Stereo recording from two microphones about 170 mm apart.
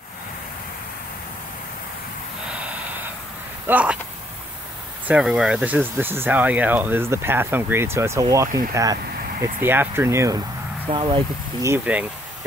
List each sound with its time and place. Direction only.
3.6 s speech: 10° right (ahead or behind)
5.0 s speech: 5° right (ahead or behind)
10.9 s speech: 30° right (ahead or behind)
11.6 s speech: 10° right (ahead or behind)